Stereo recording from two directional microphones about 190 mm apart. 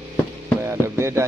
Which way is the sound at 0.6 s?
15° right (ahead or behind).